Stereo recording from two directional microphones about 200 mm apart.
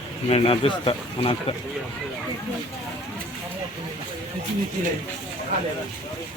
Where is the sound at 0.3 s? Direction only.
30° left (ahead or behind).